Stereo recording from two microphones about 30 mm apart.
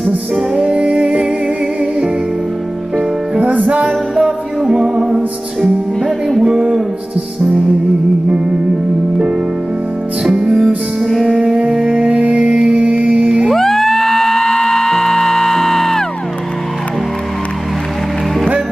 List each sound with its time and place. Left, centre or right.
0.6 s music: right
3.3 s music: right
3.6 s music: right
4.2 s music: right
4.8 s music: centre
6.0 s music: centre
6.4 s a sound: right
10.3 s music: right
11.7 s music: right
12.0 s music: right
12.4 s music: right
13.6 s music: centre